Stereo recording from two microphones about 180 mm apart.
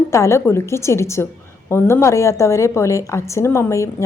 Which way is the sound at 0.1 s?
15° left (ahead or behind).